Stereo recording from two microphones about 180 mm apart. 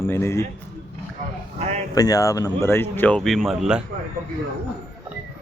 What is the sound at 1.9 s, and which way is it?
Speech, 20° left (ahead or behind).